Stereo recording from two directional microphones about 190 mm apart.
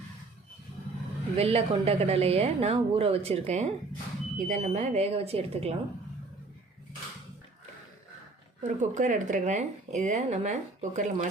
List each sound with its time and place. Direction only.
1.4 s speech: 30° right (ahead or behind)
8.6 s speech: 40° right (ahead or behind)